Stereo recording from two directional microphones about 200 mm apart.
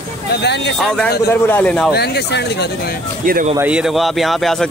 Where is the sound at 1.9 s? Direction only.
55° left (ahead or behind).